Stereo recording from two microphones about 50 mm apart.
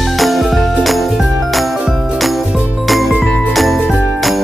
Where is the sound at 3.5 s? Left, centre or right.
Centre.